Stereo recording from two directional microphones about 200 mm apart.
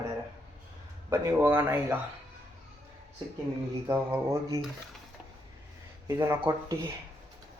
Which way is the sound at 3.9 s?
10° right (ahead or behind).